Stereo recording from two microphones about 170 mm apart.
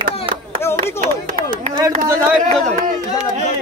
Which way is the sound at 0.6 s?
15° left (ahead or behind).